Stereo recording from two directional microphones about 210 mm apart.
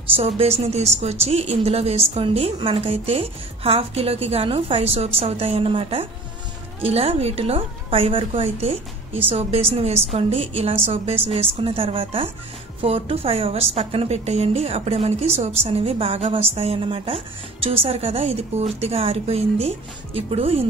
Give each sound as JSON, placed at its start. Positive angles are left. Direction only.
{"t": 0.1, "sound": "a woman's voice", "side_deg": -30}